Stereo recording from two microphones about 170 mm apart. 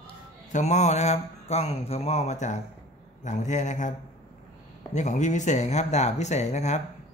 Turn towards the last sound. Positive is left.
turn(degrees=40)  # may be behind; listen again after turning